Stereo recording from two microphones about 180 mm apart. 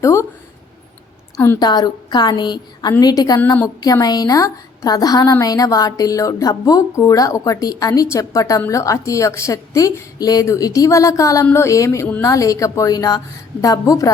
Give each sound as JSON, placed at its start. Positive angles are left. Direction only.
{"t": 0.0, "sound": "a woman's voice", "side_deg": 15}
{"t": 1.4, "sound": "a woman's voice", "side_deg": 15}